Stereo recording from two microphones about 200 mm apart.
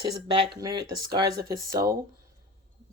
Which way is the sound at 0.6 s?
20° right (ahead or behind).